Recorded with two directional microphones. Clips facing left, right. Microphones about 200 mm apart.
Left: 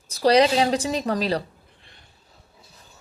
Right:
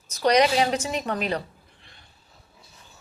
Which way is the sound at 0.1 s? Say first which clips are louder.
Left 3 dB; 30° left (ahead or behind).